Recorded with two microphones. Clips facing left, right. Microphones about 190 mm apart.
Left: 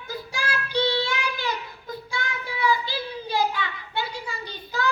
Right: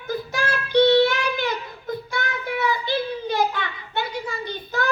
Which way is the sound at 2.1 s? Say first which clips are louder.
Right 3 dB; 60° right (ahead or behind).